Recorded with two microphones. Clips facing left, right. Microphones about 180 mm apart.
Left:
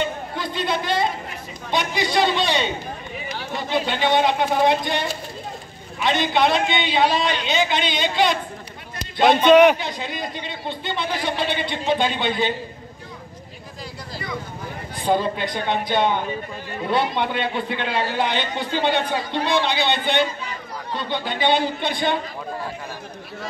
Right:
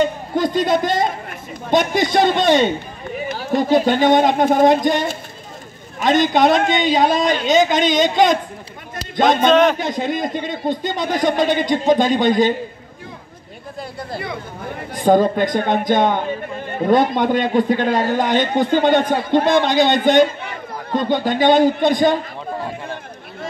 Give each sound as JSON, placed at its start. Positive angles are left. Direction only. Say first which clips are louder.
{"t": 0.0, "sound": "a man's voice", "louder": "right 8 dB", "side_deg": -45}
{"t": 8.9, "sound": "a sound", "louder": "right 1 dB", "side_deg": -45}
{"t": 9.5, "sound": "a man's voice", "louder": "left 4 dB", "side_deg": 10}
{"t": 9.8, "sound": "a man's voice", "louder": "right 8 dB", "side_deg": -50}
{"t": 15.0, "sound": "a man's voice", "louder": "right 7 dB", "side_deg": -45}